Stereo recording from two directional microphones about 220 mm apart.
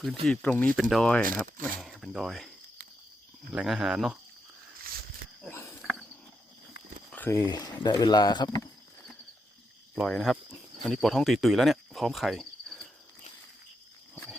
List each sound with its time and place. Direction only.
0.3 s speech: 5° left (ahead or behind)
1.2 s speech: 40° right (ahead or behind)
1.8 s speech: centre (ahead or behind)
3.5 s speech: 5° right (ahead or behind)
5.4 s a sound: 10° left (ahead or behind)
5.8 s cricket: centre (ahead or behind)
7.1 s speech: 10° left (ahead or behind)
9.9 s speech: centre (ahead or behind)